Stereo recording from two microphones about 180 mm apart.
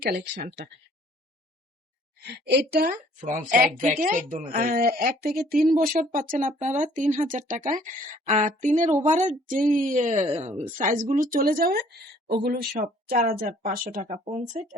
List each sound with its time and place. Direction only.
2.2 s speech: 70° right (ahead or behind); by 14.2 s 45° right (ahead or behind)
14.3 s speech: 35° right (ahead or behind)